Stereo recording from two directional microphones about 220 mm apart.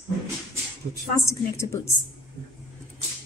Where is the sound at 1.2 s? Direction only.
10° left (ahead or behind).